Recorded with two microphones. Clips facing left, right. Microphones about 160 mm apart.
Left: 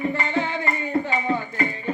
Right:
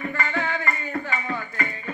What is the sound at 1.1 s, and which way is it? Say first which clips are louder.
Music: left 5 dB; 25° left (ahead or behind).